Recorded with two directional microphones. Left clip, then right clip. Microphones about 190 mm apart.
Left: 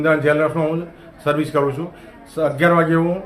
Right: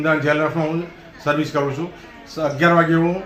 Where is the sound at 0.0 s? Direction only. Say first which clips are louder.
Left 2 dB; 25° left (ahead or behind).